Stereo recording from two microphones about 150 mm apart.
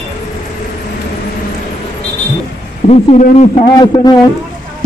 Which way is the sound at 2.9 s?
50° left (ahead or behind).